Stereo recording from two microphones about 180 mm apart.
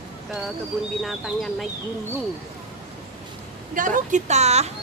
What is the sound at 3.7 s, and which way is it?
A woman's voice, 45° right (ahead or behind).